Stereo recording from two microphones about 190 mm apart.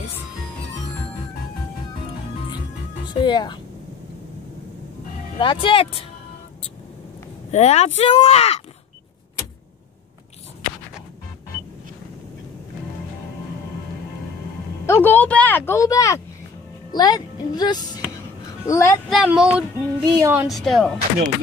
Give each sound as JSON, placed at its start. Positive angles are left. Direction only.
{"t": 3.1, "sound": "speech", "side_deg": 25}
{"t": 5.4, "sound": "speech", "side_deg": 25}
{"t": 7.5, "sound": "speech", "side_deg": 35}
{"t": 14.9, "sound": "speech", "side_deg": 10}
{"t": 19.0, "sound": "speech", "side_deg": 0}
{"t": 20.4, "sound": "speech", "side_deg": 0}